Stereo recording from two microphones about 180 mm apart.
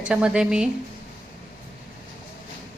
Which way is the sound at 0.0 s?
5° right (ahead or behind).